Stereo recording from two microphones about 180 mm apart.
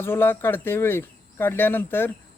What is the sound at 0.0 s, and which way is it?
Speech, 10° left (ahead or behind).